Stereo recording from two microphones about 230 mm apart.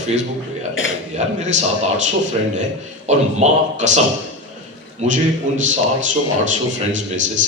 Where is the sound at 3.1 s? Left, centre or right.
Right.